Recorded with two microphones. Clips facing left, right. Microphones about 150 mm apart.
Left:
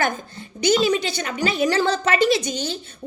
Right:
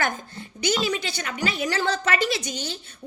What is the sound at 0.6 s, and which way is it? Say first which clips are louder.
A woman's voice: left 6 dB; 25° left (ahead or behind).